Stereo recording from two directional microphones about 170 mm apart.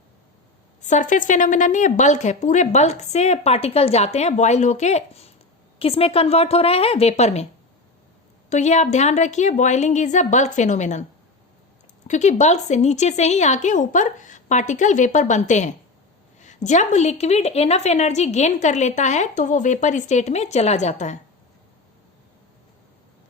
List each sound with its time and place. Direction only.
0.8 s a woman's voice: 45° left (ahead or behind)
8.4 s a woman's voice: 45° left (ahead or behind)
12.0 s a woman's voice: 45° left (ahead or behind)